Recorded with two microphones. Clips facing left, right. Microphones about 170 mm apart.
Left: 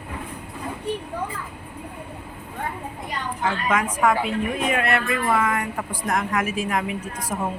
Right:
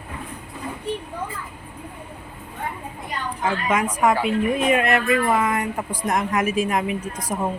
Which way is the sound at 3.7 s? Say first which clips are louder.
Right 1 dB; 20° right (ahead or behind).